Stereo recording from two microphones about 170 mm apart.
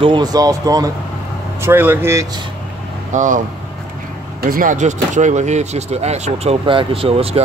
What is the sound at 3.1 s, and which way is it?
Speech, 50° right (ahead or behind).